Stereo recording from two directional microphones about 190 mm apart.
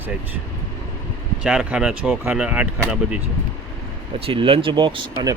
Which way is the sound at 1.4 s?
5° right (ahead or behind).